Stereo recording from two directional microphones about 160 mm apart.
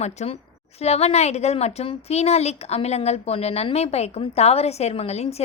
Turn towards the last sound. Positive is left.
turn(degrees=40)  # may be behind; listen again after turning